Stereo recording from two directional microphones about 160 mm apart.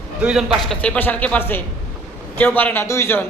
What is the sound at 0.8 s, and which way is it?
A man's voice, 10° left (ahead or behind).